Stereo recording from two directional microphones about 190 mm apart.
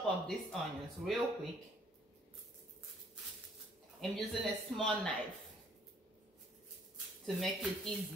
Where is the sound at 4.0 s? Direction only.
Centre (ahead or behind).